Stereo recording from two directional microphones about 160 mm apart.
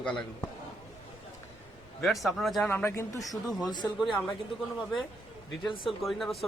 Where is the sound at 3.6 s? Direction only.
25° left (ahead or behind).